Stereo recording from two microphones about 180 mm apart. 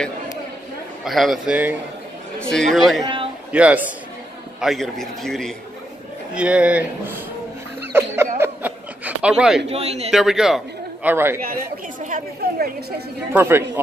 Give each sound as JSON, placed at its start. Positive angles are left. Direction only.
{"t": 1.0, "sound": "a man's voice", "side_deg": 0}
{"t": 3.0, "sound": "speech", "side_deg": -25}
{"t": 3.5, "sound": "a man's voice", "side_deg": -10}
{"t": 8.4, "sound": "chuckle", "side_deg": -10}
{"t": 9.7, "sound": "a man's voice", "side_deg": -35}
{"t": 10.1, "sound": "a man's voice", "side_deg": 0}
{"t": 11.4, "sound": "a woman's voice", "side_deg": -50}
{"t": 13.3, "sound": "speech", "side_deg": -10}